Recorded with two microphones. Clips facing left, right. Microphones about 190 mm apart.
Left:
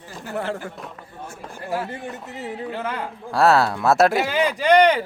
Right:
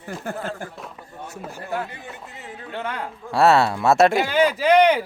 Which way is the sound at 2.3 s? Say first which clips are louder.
Left 7 dB; 65° left (ahead or behind).